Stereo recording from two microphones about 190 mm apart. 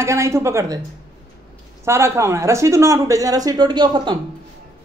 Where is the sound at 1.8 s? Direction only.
15° right (ahead or behind).